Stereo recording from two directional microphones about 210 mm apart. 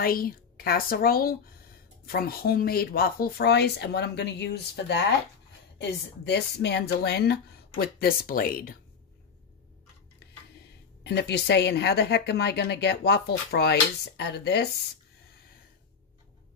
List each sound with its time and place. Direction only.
0.0 s speech: 45° left (ahead or behind)
11.1 s speech: 55° left (ahead or behind)